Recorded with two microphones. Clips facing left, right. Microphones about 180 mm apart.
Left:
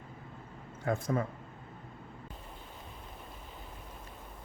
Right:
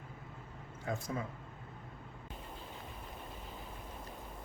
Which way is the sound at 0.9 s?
55° left (ahead or behind).